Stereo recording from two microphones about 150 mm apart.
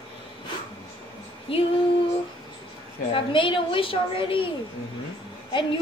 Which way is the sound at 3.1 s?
35° left (ahead or behind).